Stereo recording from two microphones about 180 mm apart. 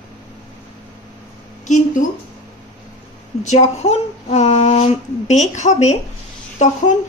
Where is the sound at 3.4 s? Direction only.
35° left (ahead or behind).